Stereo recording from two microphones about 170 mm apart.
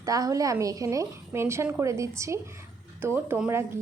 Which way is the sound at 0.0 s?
20° right (ahead or behind).